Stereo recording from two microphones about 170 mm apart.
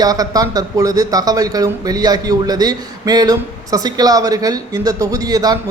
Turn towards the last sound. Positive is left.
turn(degrees=-20)  # may be behind; listen again after turning